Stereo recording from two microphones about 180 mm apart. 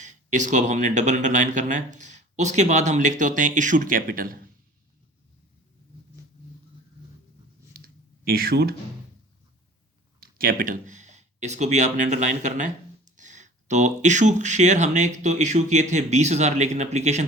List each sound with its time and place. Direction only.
0.0 s speech: 40° right (ahead or behind)
7.7 s a sound: 55° right (ahead or behind)
10.2 s speech: 55° right (ahead or behind)